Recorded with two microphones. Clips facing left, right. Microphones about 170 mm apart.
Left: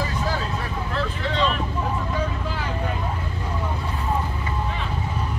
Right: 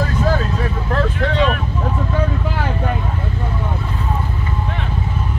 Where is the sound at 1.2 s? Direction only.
60° right (ahead or behind).